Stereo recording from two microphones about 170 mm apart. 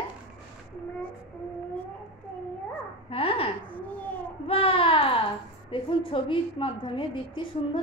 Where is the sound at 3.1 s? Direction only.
35° left (ahead or behind).